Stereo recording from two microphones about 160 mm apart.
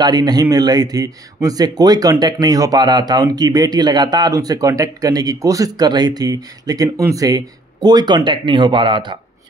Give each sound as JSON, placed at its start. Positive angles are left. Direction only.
{"t": 0.0, "sound": "speech", "side_deg": -25}